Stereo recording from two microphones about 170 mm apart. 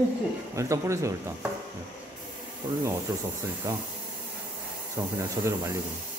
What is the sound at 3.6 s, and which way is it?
Speech, 20° right (ahead or behind).